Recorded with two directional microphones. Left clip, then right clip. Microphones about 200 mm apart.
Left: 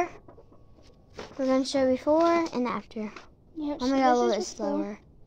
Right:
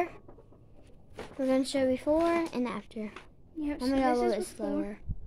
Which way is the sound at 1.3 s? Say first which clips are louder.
Left 3 dB; centre (ahead or behind).